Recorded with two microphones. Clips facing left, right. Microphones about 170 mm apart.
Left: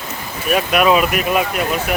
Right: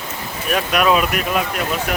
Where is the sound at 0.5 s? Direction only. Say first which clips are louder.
Left 3 dB; 5° left (ahead or behind).